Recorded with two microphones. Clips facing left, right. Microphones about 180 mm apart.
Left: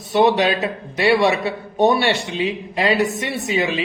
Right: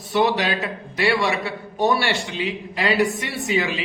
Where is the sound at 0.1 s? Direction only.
25° left (ahead or behind).